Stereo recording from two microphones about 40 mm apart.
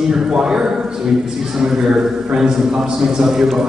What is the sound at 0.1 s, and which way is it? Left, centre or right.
A man's voice, centre.